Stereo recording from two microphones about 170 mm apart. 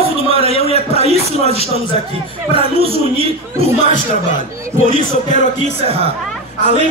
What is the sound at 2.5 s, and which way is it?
Speech, 35° right (ahead or behind).